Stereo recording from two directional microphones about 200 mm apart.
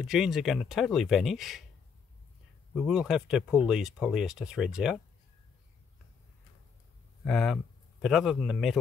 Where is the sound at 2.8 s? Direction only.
Centre (ahead or behind).